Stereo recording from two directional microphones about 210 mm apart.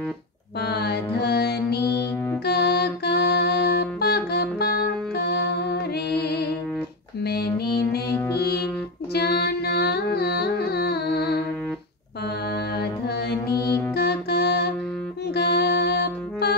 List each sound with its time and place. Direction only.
0.6 s music: 50° left (ahead or behind)
7.2 s female singing: 50° left (ahead or behind)
8.4 s music: 50° left (ahead or behind)
13.9 s music: 50° left (ahead or behind)